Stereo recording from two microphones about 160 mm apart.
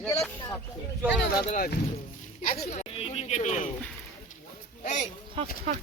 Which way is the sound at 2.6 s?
40° left (ahead or behind).